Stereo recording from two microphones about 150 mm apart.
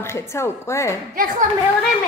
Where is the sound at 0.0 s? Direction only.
15° left (ahead or behind).